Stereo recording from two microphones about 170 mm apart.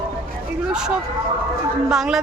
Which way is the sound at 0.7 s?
5° right (ahead or behind).